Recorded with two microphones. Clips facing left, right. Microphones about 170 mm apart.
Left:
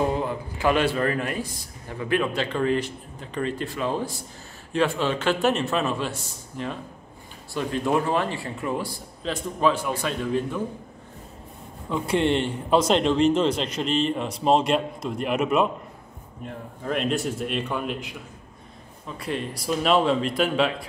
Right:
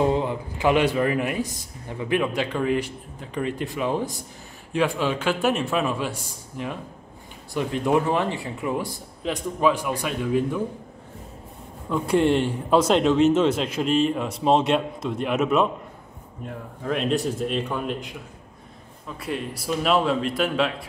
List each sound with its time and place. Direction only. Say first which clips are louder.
0.0 s speech: right 3 dB; 20° right (ahead or behind)
11.9 s speech: right 2 dB; 5° right (ahead or behind)
16.9 s speech: right 2 dB; centre (ahead or behind)
19.1 s speech: even; 5° right (ahead or behind)